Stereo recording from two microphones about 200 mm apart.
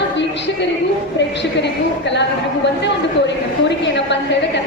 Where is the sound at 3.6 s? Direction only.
60° left (ahead or behind).